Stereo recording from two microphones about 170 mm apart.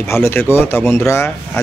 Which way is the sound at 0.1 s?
15° left (ahead or behind).